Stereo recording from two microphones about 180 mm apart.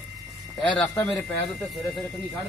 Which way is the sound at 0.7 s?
5° left (ahead or behind).